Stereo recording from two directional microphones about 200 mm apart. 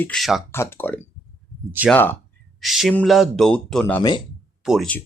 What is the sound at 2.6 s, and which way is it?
Speech, centre (ahead or behind).